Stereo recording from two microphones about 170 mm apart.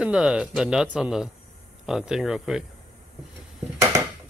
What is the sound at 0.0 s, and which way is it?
Speech, 5° right (ahead or behind).